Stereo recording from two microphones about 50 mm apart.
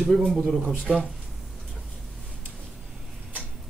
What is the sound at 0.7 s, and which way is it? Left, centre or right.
Speech, centre.